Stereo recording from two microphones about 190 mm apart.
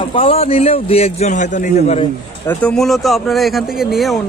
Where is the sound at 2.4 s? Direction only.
10° left (ahead or behind).